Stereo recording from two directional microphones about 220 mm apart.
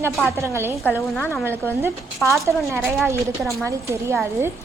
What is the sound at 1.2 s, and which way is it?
Speech, 10° left (ahead or behind).